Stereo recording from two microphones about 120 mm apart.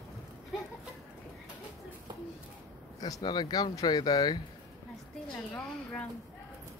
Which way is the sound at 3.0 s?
30° left (ahead or behind).